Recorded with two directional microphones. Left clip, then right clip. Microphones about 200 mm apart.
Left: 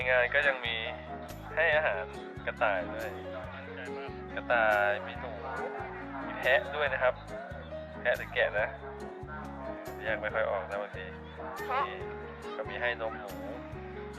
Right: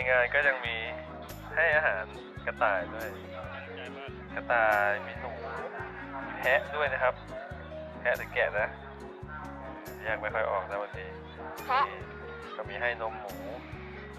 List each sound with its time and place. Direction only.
0.0 s speech: 5° left (ahead or behind)
4.4 s speech: 5° left (ahead or behind)
6.4 s speech: centre (ahead or behind)
10.0 s speech: 5° left (ahead or behind)
11.7 s a child's voice: 25° right (ahead or behind)
12.7 s speech: 5° left (ahead or behind)